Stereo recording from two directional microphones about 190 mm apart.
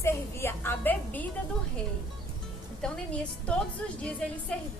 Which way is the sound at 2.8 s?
5° left (ahead or behind).